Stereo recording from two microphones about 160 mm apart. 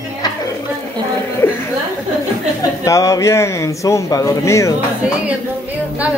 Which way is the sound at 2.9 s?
20° left (ahead or behind).